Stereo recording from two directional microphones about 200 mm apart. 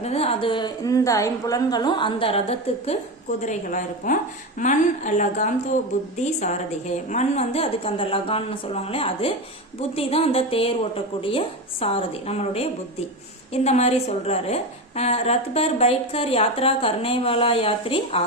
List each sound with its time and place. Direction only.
0.0 s a woman's voice: 30° left (ahead or behind)